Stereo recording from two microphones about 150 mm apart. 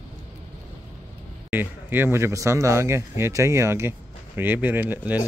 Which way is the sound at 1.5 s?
10° right (ahead or behind).